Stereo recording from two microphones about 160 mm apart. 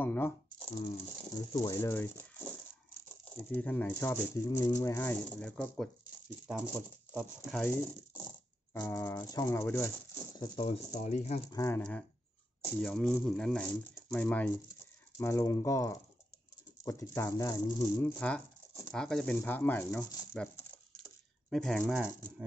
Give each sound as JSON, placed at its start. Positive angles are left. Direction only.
{"t": 0.0, "sound": "speech", "side_deg": 10}
{"t": 0.7, "sound": "speech", "side_deg": 40}
{"t": 1.3, "sound": "speech", "side_deg": 25}
{"t": 6.4, "sound": "speech", "side_deg": -10}
{"t": 7.5, "sound": "speech", "side_deg": 15}
{"t": 10.3, "sound": "speech", "side_deg": 30}
{"t": 11.5, "sound": "speech", "side_deg": 20}
{"t": 12.8, "sound": "speech", "side_deg": 0}
{"t": 17.9, "sound": "speech", "side_deg": 10}
{"t": 21.5, "sound": "speech", "side_deg": 0}